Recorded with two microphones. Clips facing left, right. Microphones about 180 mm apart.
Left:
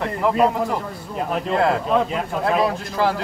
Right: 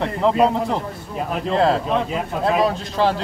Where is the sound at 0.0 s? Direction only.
25° right (ahead or behind).